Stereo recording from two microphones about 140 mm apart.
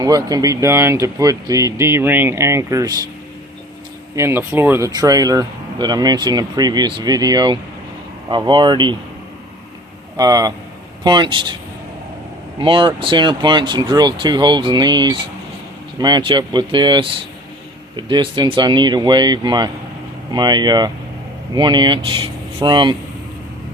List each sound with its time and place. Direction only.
0.0 s speech: 25° right (ahead or behind)
4.1 s speech: 20° right (ahead or behind)
4.9 s speech: 25° right (ahead or behind)
10.2 s speech: 25° right (ahead or behind)
12.5 s speech: 35° right (ahead or behind)